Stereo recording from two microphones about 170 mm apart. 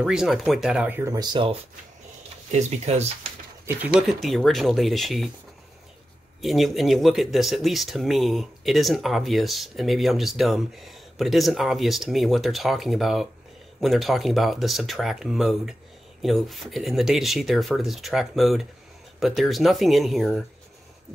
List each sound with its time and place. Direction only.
0.0 s speech: 5° right (ahead or behind); by 1.6 s 30° right (ahead or behind)
2.5 s speech: 40° right (ahead or behind)
3.6 s speech: 5° right (ahead or behind)
6.4 s speech: centre (ahead or behind)